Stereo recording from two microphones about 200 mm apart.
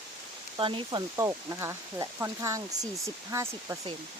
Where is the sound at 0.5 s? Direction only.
25° right (ahead or behind).